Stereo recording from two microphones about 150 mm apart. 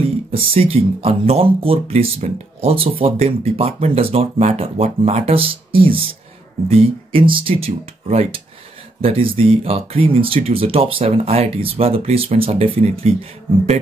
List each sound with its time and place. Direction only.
0.3 s speech: 40° right (ahead or behind)